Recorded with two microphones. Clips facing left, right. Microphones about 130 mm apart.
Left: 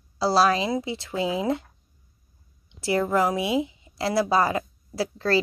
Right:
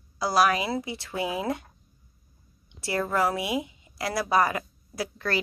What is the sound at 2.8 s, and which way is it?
A woman's voice, 20° left (ahead or behind).